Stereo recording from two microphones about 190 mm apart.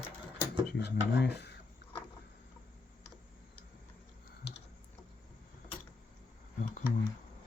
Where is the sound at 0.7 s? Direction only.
65° left (ahead or behind).